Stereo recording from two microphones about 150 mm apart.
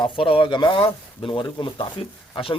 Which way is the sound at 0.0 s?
40° left (ahead or behind).